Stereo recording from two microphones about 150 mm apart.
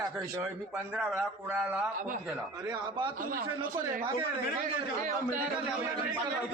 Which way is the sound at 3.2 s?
70° right (ahead or behind).